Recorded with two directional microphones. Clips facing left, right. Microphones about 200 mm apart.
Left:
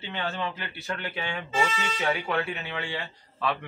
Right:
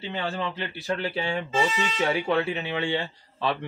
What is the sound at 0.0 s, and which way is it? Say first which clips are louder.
Speech: right 2 dB; 35° right (ahead or behind).